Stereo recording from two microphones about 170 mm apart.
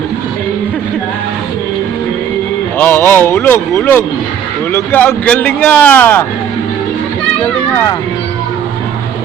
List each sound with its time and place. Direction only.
2.7 s speech: 10° left (ahead or behind)